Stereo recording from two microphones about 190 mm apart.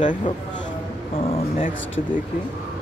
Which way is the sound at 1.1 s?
30° left (ahead or behind).